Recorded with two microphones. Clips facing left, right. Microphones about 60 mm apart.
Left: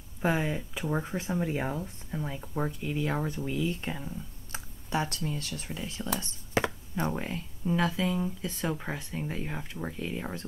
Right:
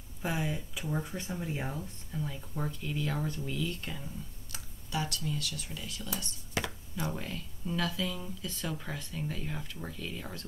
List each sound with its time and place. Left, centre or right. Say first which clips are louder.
0.2 s speech: left 6 dB; left